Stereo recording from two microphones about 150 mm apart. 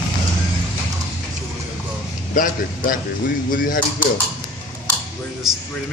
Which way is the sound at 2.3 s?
65° left (ahead or behind).